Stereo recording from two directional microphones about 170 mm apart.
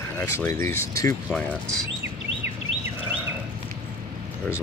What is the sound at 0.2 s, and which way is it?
Speech, 15° left (ahead or behind).